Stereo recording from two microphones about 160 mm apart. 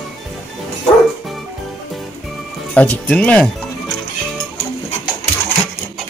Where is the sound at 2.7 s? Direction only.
10° left (ahead or behind).